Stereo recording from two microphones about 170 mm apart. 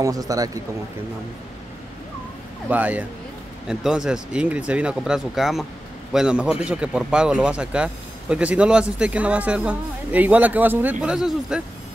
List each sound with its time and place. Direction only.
0.0 s speech: 20° right (ahead or behind)
2.7 s a man's voice: 10° right (ahead or behind)